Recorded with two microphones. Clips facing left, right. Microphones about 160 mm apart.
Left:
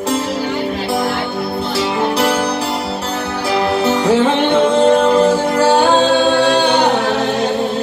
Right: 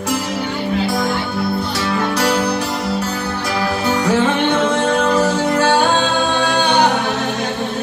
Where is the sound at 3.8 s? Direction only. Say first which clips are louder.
Left 2 dB; 25° left (ahead or behind).